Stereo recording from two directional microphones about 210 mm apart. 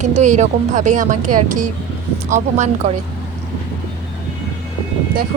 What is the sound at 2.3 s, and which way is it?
Speech, 35° right (ahead or behind).